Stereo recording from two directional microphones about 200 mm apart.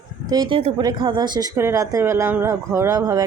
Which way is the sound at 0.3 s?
20° right (ahead or behind).